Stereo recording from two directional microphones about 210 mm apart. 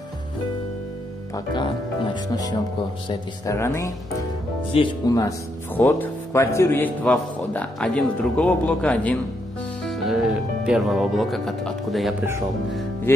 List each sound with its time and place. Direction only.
1.3 s a man's voice: 20° left (ahead or behind); by 12.2 s centre (ahead or behind)